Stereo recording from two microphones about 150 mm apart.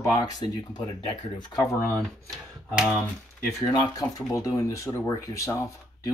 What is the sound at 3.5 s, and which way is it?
Speech, 25° left (ahead or behind).